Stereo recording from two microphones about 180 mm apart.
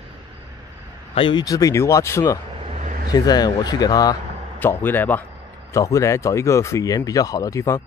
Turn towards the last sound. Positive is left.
turn(degrees=15)  # may be behind; listen again after turning